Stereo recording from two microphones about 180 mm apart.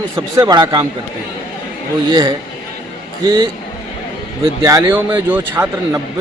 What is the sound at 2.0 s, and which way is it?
A man's voice, 25° right (ahead or behind).